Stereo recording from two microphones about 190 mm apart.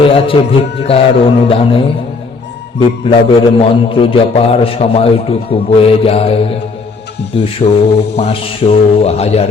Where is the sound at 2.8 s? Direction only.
30° left (ahead or behind).